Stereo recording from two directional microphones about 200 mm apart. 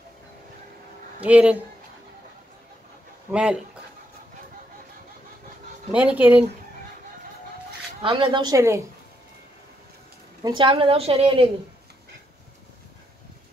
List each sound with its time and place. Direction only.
1.2 s speech: 5° right (ahead or behind)
3.3 s speech: 5° right (ahead or behind)
5.9 s speech: 10° right (ahead or behind)
8.0 s a woman's voice: 25° right (ahead or behind)
10.4 s a woman's voice: 25° right (ahead or behind)